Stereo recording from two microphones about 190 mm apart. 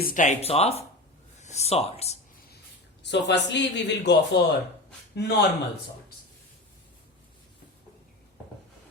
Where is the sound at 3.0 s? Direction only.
65° left (ahead or behind).